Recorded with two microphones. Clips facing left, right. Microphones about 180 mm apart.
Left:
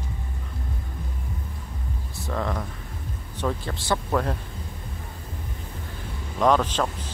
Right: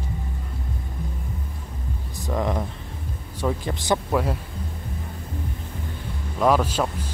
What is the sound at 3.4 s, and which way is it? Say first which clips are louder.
Speech: right 3 dB; 15° right (ahead or behind).